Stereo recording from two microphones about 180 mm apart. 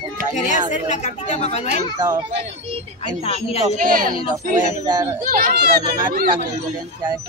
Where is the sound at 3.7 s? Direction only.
50° right (ahead or behind).